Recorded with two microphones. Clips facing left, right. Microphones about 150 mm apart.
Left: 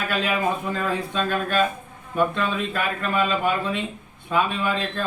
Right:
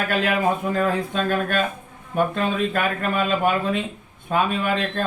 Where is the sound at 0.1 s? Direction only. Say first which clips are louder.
Right 2 dB; 50° right (ahead or behind).